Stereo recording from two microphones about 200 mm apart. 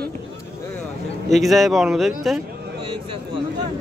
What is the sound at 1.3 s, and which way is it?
Speech, centre (ahead or behind).